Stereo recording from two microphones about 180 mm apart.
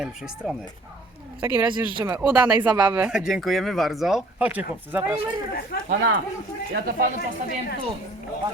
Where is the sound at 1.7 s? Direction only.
15° right (ahead or behind).